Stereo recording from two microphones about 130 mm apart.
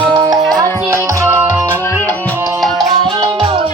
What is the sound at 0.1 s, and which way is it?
Music, 30° right (ahead or behind).